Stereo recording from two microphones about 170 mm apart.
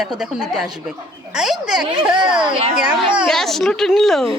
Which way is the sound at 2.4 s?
30° right (ahead or behind).